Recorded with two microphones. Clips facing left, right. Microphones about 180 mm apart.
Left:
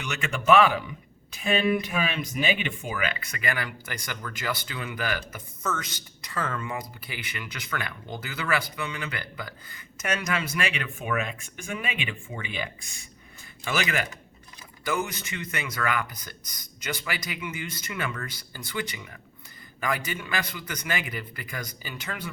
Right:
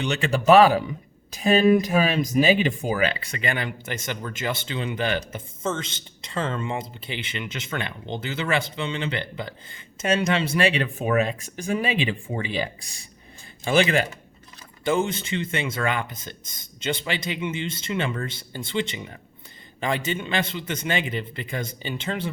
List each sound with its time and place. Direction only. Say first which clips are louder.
0.0 s speech: right 6 dB; 30° right (ahead or behind)